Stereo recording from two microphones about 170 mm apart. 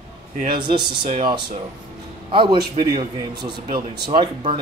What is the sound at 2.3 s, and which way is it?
Speech, 30° right (ahead or behind).